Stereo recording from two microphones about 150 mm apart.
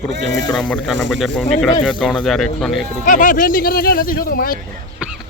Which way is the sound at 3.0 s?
60° left (ahead or behind).